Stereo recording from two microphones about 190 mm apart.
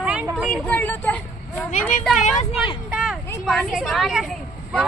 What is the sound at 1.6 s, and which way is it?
Speech, 40° left (ahead or behind).